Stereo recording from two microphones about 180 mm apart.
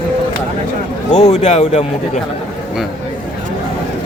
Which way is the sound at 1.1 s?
40° left (ahead or behind).